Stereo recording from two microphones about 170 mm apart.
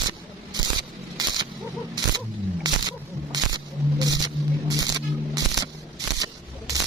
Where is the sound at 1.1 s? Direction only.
25° right (ahead or behind).